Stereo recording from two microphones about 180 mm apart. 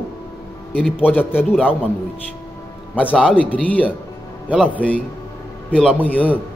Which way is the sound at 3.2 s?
5° left (ahead or behind).